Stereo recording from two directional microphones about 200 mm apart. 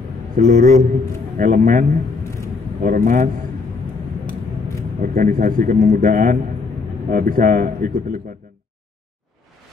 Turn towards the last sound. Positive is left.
turn(degrees=-45)  # may be behind; listen again after turning